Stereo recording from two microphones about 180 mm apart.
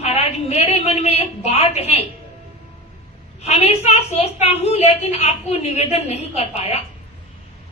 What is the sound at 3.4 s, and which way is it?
A woman's voice, 35° left (ahead or behind).